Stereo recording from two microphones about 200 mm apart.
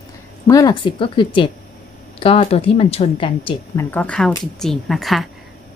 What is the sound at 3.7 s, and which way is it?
A woman's voice, 10° left (ahead or behind).